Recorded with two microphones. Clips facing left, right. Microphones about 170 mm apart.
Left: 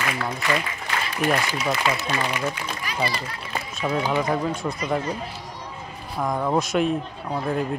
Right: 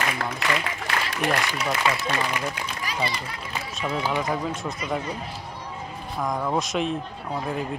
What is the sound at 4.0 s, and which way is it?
Speech, 15° left (ahead or behind).